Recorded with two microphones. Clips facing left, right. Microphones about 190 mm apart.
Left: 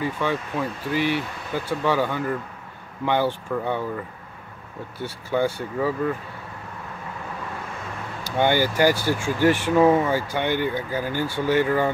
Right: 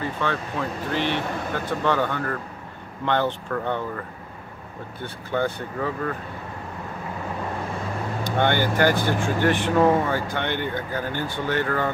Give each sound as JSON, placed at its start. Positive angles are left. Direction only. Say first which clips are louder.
{"t": 0.0, "sound": "speech", "louder": "left 2 dB", "side_deg": 10}
{"t": 5.0, "sound": "speech", "louder": "left 2 dB", "side_deg": 10}
{"t": 8.2, "sound": "vehicle", "louder": "left 2 dB", "side_deg": 10}
{"t": 8.9, "sound": "speech", "louder": "right 1 dB", "side_deg": -55}
{"t": 9.4, "sound": "speech", "louder": "left 3 dB", "side_deg": 10}